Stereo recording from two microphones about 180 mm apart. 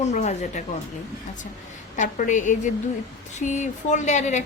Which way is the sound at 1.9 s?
45° left (ahead or behind).